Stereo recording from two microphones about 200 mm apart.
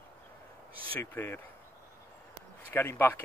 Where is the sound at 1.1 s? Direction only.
10° left (ahead or behind).